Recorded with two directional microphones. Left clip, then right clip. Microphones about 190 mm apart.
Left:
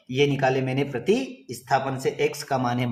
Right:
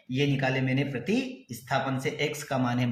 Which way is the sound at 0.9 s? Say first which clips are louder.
Left 6 dB; 25° left (ahead or behind).